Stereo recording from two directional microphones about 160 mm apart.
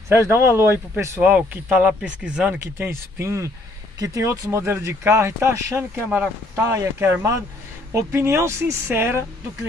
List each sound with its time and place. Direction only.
0.1 s speech: 15° right (ahead or behind)
2.6 s speech: 15° right (ahead or behind)